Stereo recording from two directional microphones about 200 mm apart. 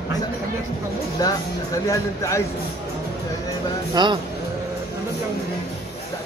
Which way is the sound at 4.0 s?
20° right (ahead or behind).